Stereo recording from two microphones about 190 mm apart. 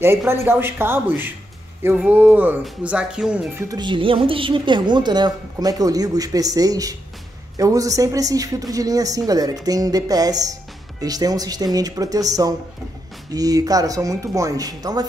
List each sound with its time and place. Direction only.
0.0 s speech: 10° right (ahead or behind)
3.6 s speech: 25° right (ahead or behind)